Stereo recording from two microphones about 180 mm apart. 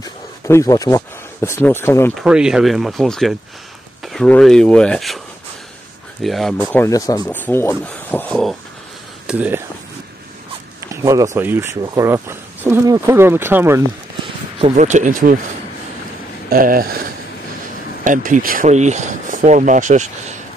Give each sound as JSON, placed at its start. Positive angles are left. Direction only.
{"t": 0.0, "sound": "speech", "side_deg": 20}
{"t": 2.1, "sound": "speech", "side_deg": -5}
{"t": 6.2, "sound": "speech", "side_deg": 0}
{"t": 6.8, "sound": "speech", "side_deg": 20}
{"t": 7.2, "sound": "speech", "side_deg": 10}
{"t": 9.3, "sound": "speech", "side_deg": -10}
{"t": 10.8, "sound": "a sound", "side_deg": -20}
{"t": 11.3, "sound": "speech", "side_deg": -10}
{"t": 14.6, "sound": "speech", "side_deg": -40}
{"t": 16.4, "sound": "speech", "side_deg": -55}
{"t": 18.0, "sound": "speech", "side_deg": -45}